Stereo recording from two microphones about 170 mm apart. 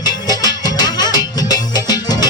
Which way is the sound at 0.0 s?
25° left (ahead or behind).